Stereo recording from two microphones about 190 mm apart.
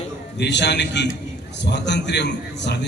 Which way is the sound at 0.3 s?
65° left (ahead or behind).